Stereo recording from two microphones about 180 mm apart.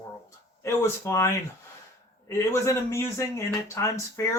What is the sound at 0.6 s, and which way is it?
Speech, 15° left (ahead or behind).